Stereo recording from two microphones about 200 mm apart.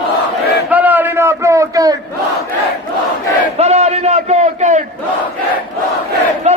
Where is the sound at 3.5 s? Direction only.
30° right (ahead or behind).